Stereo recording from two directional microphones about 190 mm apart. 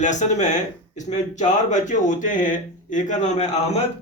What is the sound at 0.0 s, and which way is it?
Speech, 40° left (ahead or behind).